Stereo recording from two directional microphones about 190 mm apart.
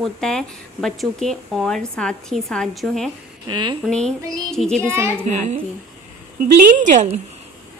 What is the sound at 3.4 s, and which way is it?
Speech, 25° right (ahead or behind).